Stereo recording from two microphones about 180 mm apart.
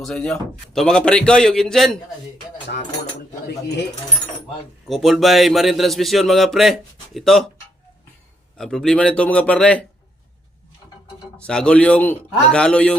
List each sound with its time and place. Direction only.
0.0 s a man's voice: 5° left (ahead or behind)
2.6 s speech: 65° left (ahead or behind)
4.9 s a man's voice: centre (ahead or behind)
8.5 s a man's voice: centre (ahead or behind)
11.3 s a man's voice: 5° left (ahead or behind)